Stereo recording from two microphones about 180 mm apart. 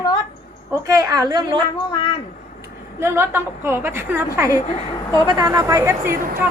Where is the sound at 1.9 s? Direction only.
25° left (ahead or behind).